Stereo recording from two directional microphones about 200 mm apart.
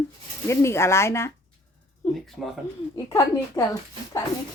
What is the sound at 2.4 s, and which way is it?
Speech, centre (ahead or behind).